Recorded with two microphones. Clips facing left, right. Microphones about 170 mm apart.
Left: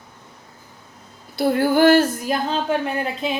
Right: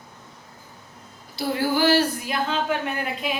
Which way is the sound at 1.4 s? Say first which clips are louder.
Left 6 dB; 55° left (ahead or behind).